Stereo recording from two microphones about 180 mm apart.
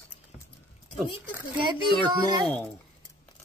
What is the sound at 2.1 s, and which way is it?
Speech, 25° right (ahead or behind).